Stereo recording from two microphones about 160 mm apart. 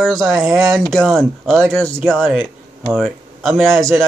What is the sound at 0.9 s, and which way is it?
Speech, 5° left (ahead or behind).